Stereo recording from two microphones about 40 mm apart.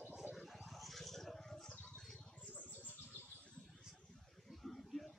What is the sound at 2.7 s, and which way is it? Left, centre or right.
Bird, left.